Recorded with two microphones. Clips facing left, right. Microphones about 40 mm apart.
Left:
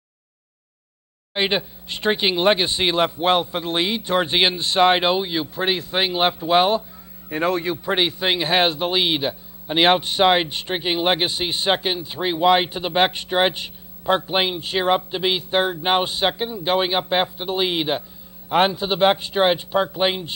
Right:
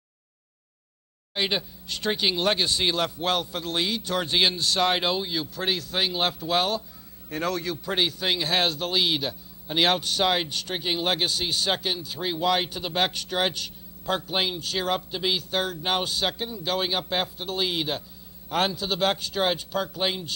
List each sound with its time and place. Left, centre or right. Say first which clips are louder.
1.3 s a man's voice: left 5 dB; left